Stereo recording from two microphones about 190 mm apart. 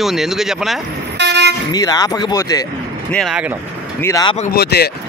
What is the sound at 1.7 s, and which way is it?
Speech, 20° left (ahead or behind).